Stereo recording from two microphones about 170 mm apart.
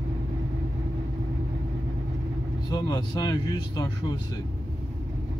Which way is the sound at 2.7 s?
25° left (ahead or behind).